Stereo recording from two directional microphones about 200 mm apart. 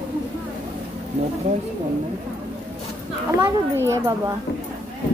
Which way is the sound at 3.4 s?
15° right (ahead or behind).